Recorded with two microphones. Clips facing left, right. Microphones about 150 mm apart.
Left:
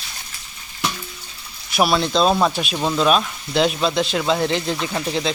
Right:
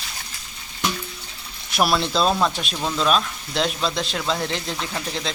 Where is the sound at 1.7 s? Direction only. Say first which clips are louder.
Left 2 dB; centre (ahead or behind).